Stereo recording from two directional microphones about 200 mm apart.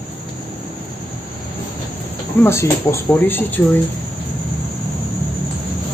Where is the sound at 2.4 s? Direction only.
15° left (ahead or behind).